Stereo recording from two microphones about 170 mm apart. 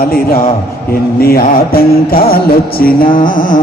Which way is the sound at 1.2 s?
60° left (ahead or behind).